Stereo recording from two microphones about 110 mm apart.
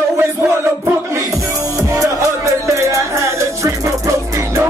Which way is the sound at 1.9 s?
30° right (ahead or behind).